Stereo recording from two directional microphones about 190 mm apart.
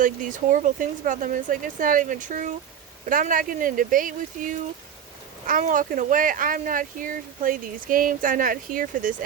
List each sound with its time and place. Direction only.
0.0 s speech: 45° right (ahead or behind)